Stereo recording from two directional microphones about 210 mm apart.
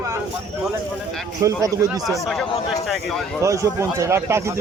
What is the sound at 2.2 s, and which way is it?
Speech, centre (ahead or behind).